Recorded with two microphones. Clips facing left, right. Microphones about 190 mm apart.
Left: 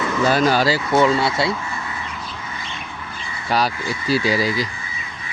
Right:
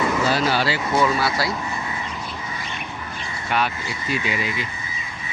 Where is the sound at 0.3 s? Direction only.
45° left (ahead or behind).